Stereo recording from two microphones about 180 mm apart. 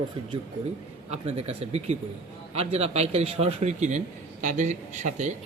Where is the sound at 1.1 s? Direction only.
35° right (ahead or behind).